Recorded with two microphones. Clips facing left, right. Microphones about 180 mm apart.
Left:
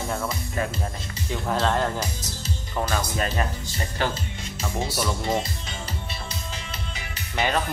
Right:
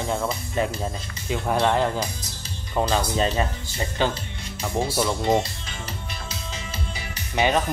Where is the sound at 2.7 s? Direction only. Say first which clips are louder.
Right 4 dB; 25° right (ahead or behind).